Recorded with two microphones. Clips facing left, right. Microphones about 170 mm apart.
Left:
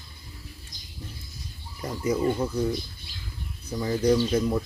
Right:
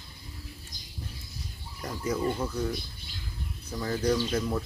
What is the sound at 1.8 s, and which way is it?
Speech, 10° left (ahead or behind).